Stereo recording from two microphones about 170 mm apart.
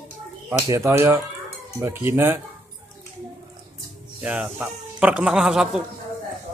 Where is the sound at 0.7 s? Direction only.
15° right (ahead or behind).